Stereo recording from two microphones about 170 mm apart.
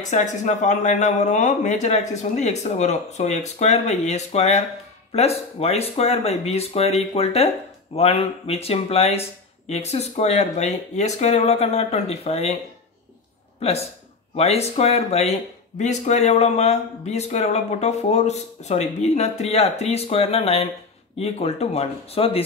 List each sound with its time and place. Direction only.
0.0 s speech: 45° left (ahead or behind)
13.6 s speech: 35° left (ahead or behind)